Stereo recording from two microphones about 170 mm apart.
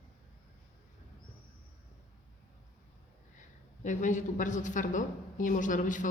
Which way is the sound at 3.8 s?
45° left (ahead or behind).